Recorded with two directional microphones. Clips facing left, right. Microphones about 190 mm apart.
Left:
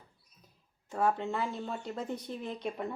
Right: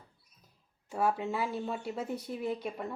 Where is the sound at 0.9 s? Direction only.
10° right (ahead or behind).